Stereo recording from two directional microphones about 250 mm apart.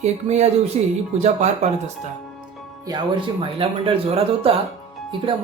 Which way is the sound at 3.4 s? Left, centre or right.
Right.